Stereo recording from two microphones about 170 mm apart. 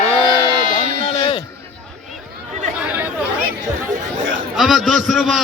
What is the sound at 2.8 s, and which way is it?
Chatter, 10° right (ahead or behind).